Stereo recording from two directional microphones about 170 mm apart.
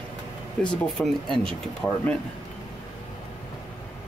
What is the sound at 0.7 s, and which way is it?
Speech, centre (ahead or behind).